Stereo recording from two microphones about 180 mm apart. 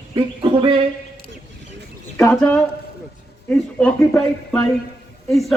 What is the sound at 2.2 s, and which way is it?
Speech, 5° left (ahead or behind).